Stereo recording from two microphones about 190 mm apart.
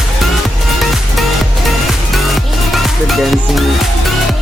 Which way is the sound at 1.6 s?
Centre (ahead or behind).